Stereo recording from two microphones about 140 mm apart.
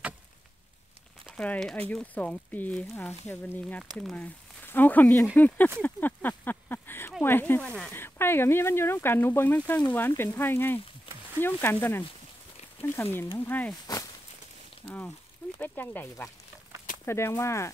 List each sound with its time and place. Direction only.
1.2 s speech: 5° left (ahead or behind)
14.9 s speech: 15° left (ahead or behind)